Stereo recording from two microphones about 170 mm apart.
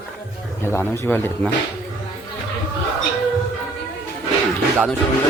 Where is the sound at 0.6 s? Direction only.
15° left (ahead or behind).